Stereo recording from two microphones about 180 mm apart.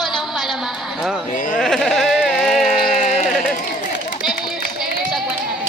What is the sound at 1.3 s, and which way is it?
Sheep, 50° left (ahead or behind).